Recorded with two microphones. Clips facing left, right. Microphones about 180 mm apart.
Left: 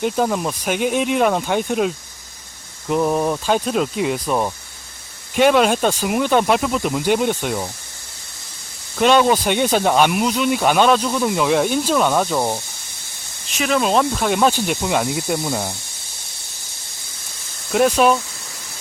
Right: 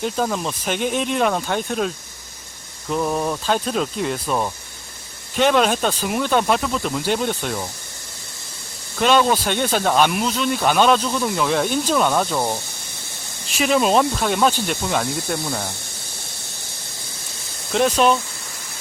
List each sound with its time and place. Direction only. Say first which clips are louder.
0.0 s speech: left 3 dB; 10° left (ahead or behind)
2.9 s speech: left 4 dB; 15° left (ahead or behind)
9.0 s speech: left 2 dB; 10° left (ahead or behind)
13.6 s speech: right 1 dB; 5° right (ahead or behind)
17.7 s speech: left 2 dB; 10° left (ahead or behind)